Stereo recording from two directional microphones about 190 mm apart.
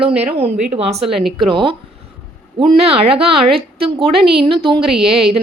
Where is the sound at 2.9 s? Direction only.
30° right (ahead or behind).